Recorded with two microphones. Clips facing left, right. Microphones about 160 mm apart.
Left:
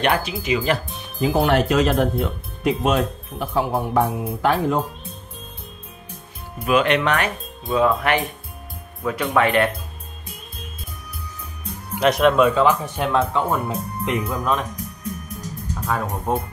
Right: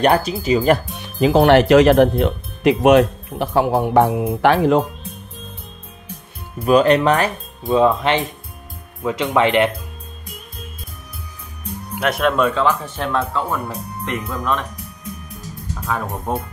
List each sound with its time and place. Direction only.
0.0 s speech: 35° right (ahead or behind)
0.9 s speech: 80° right
6.6 s speech: 35° right (ahead or behind); by 9.7 s 20° right (ahead or behind)
12.0 s speech: centre (ahead or behind); by 14.6 s 15° left (ahead or behind)
15.9 s speech: centre (ahead or behind)